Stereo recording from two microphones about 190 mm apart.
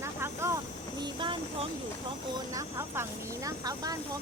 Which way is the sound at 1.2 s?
25° right (ahead or behind).